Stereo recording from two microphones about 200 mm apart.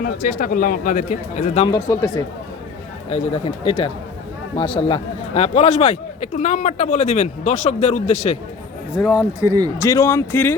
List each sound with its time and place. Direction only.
0.0 s a man's voice: 45° left (ahead or behind)
1.6 s speech: 15° left (ahead or behind)
3.1 s a man's voice: 30° left (ahead or behind)
8.9 s speech: 5° right (ahead or behind)
9.5 s speech: 20° right (ahead or behind)
9.7 s speech: 15° left (ahead or behind)